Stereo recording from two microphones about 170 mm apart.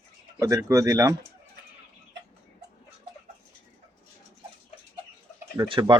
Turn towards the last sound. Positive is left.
turn(degrees=-25)  # may be behind; listen again after turning